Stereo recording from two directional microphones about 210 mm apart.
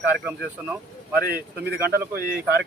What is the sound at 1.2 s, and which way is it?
Speech, 50° right (ahead or behind).